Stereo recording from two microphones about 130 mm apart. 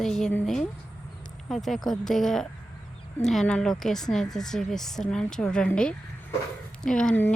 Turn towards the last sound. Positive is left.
turn(degrees=10)  # may be behind; listen again after turning